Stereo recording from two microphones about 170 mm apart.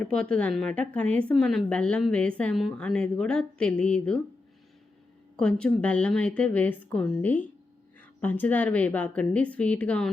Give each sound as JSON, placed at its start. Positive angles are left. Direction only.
{"t": 0.0, "sound": "speech", "side_deg": 5}
{"t": 5.4, "sound": "speech", "side_deg": 5}